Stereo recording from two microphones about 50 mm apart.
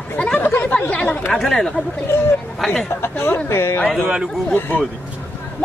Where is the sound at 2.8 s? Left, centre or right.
Left.